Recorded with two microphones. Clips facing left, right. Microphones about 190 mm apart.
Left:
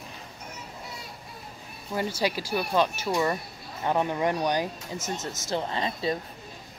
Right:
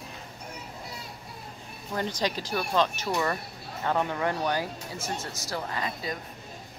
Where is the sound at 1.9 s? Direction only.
10° left (ahead or behind); by 6.2 s 25° left (ahead or behind).